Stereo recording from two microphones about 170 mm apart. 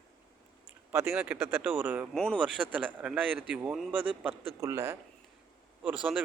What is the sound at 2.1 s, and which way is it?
Speech, 5° left (ahead or behind).